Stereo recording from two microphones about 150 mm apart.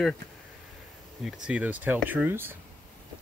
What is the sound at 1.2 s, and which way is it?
Speech, 5° right (ahead or behind).